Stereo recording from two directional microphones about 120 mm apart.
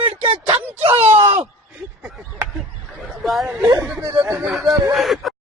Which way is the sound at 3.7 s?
25° right (ahead or behind).